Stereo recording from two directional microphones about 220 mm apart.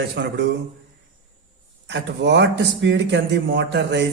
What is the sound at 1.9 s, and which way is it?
Speech, 50° right (ahead or behind).